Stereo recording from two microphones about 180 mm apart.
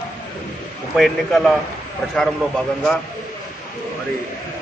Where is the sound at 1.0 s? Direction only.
Centre (ahead or behind).